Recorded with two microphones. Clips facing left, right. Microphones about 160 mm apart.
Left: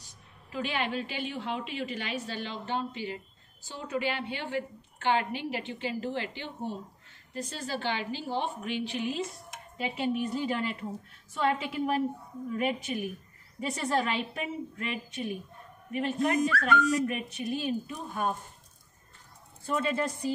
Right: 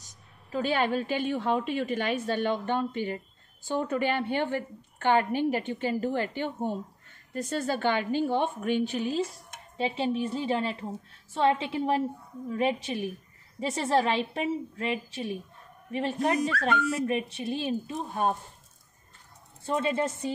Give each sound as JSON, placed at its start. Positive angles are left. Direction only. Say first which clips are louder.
{"t": 0.5, "sound": "a woman's voice", "louder": "right 6 dB", "side_deg": -40}
{"t": 19.6, "sound": "speech", "louder": "right 2 dB", "side_deg": -25}